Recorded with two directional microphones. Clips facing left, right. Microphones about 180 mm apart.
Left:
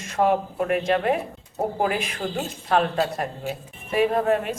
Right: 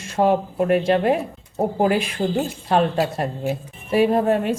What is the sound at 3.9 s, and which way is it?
Speech, 30° right (ahead or behind).